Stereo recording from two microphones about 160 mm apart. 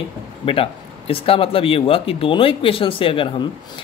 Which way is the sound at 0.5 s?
35° left (ahead or behind).